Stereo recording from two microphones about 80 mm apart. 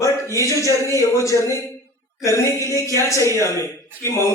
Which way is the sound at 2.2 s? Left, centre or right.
Left.